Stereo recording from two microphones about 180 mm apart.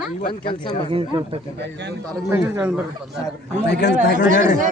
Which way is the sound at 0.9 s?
30° right (ahead or behind).